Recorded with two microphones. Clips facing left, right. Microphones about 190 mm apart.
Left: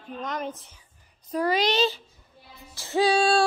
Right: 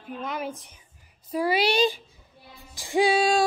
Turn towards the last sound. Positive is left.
turn(degrees=-10)  # may be behind; listen again after turning